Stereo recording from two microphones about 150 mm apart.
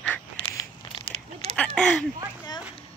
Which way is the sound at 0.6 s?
30° left (ahead or behind).